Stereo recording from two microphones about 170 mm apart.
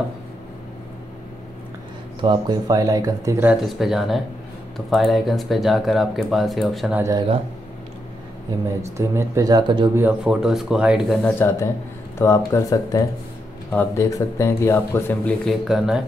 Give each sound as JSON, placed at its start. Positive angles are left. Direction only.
{"t": 2.2, "sound": "speech", "side_deg": -25}
{"t": 3.6, "sound": "speech", "side_deg": 0}
{"t": 7.0, "sound": "speech", "side_deg": -20}
{"t": 8.9, "sound": "speech", "side_deg": -15}
{"t": 9.9, "sound": "speech", "side_deg": -10}
{"t": 11.2, "sound": "speech", "side_deg": 15}
{"t": 15.6, "sound": "speech", "side_deg": -5}